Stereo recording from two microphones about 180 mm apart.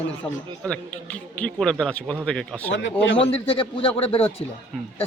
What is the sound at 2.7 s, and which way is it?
Speech, 90° left.